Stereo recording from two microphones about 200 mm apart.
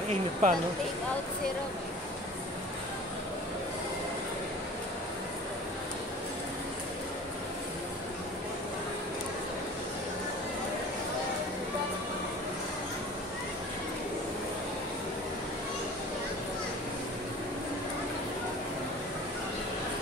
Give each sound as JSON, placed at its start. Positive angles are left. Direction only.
{"t": 0.1, "sound": "speech", "side_deg": -40}